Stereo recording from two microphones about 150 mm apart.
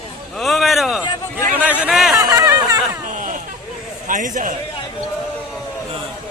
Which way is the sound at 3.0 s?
60° right (ahead or behind).